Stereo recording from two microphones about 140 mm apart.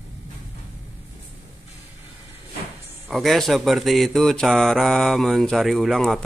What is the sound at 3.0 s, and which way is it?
Speech, centre (ahead or behind).